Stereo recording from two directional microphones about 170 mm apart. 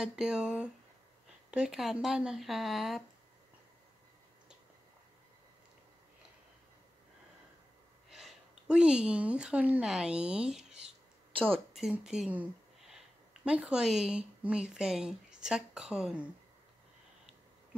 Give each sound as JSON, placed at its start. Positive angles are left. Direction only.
{"t": 0.0, "sound": "speech", "side_deg": -5}
{"t": 8.1, "sound": "a woman's voice", "side_deg": 0}
{"t": 10.6, "sound": "a sound", "side_deg": -40}
{"t": 11.7, "sound": "speech", "side_deg": -5}